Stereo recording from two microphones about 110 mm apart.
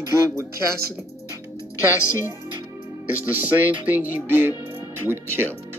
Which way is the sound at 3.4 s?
15° right (ahead or behind).